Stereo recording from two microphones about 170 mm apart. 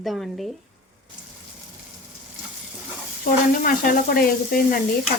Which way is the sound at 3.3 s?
60° left (ahead or behind).